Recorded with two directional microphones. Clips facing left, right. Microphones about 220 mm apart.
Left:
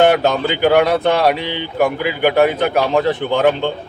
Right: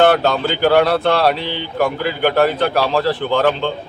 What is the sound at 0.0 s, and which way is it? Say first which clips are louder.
Speech: left 1 dB; 15° left (ahead or behind).